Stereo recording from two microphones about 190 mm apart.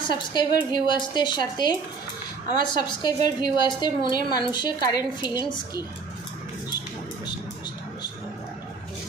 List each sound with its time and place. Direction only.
0.0 s a woman's voice: 25° left (ahead or behind)